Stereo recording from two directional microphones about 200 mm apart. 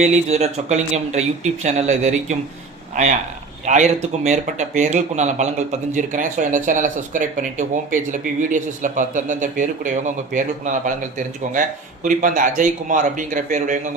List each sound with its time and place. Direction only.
0.0 s a man's voice: 35° right (ahead or behind)